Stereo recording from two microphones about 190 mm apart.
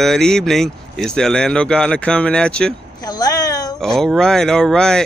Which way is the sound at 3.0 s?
20° left (ahead or behind).